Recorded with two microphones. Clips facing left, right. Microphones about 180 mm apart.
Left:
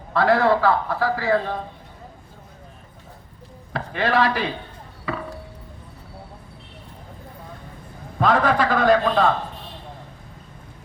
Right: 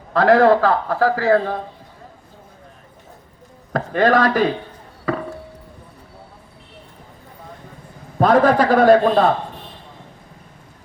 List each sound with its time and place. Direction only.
0.3 s speech: 45° right (ahead or behind)
3.7 s speech: 45° right (ahead or behind)
5.1 s chop: 40° right (ahead or behind)
8.2 s a man's voice: 40° right (ahead or behind)